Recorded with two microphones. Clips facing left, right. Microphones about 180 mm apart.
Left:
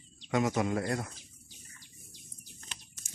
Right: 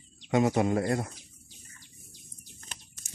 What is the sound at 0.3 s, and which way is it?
Speech, 30° right (ahead or behind).